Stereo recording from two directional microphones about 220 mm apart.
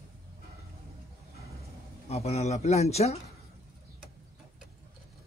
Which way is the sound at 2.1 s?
30° left (ahead or behind).